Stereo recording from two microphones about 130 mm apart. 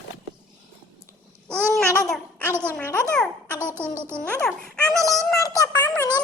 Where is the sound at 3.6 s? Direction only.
15° right (ahead or behind).